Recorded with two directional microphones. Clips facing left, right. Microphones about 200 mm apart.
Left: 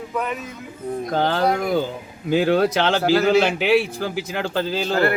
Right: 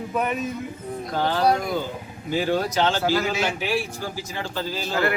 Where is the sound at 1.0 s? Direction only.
50° left (ahead or behind).